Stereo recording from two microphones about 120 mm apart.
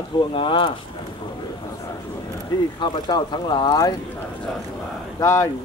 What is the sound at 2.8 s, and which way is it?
Speech, 35° left (ahead or behind).